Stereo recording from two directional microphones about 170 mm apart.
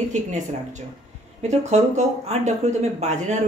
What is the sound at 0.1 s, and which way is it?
Speech, 45° right (ahead or behind).